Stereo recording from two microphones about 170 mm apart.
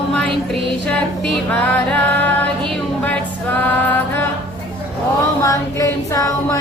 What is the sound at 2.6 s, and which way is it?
Music, 10° left (ahead or behind).